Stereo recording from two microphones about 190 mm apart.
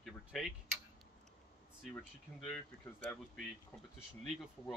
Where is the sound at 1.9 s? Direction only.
5° left (ahead or behind).